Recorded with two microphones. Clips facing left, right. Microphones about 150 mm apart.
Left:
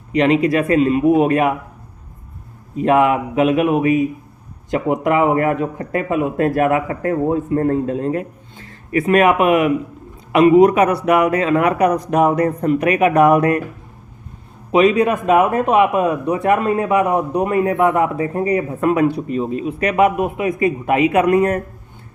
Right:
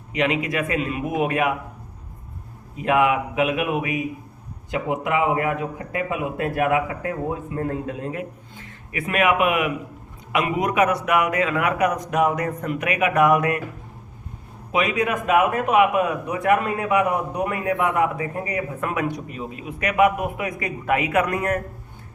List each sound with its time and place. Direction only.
0.1 s a man's voice: 35° left (ahead or behind)
2.7 s a man's voice: 35° left (ahead or behind)
14.7 s a man's voice: 30° left (ahead or behind)